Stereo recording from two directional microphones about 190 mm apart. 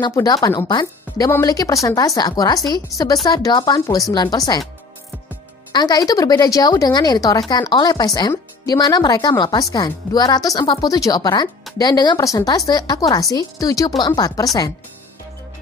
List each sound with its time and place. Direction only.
0.0 s speech: 20° left (ahead or behind)
2.9 s a woman's voice: centre (ahead or behind)
3.3 s speech: 20° left (ahead or behind)
5.7 s speech: 20° left (ahead or behind)